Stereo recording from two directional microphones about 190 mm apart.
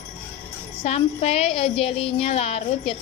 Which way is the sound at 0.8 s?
35° left (ahead or behind).